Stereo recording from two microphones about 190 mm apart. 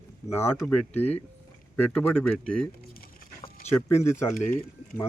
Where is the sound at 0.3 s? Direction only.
10° left (ahead or behind).